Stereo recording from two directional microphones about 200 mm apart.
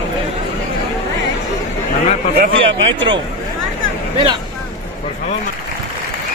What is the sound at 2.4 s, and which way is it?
Speech, 65° right (ahead or behind).